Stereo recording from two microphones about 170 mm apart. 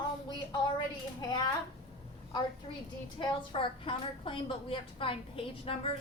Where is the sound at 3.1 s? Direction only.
30° left (ahead or behind).